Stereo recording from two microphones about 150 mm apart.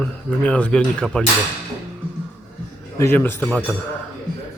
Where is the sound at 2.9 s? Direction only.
15° left (ahead or behind).